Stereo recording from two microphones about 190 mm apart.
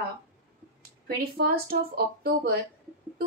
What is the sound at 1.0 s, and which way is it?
Speech, 55° right (ahead or behind).